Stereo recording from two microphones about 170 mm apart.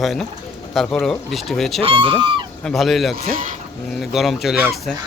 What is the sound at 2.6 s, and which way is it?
Speech, centre (ahead or behind).